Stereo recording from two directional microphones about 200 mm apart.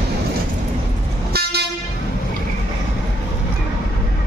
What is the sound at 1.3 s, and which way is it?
Vehicle, 55° right (ahead or behind).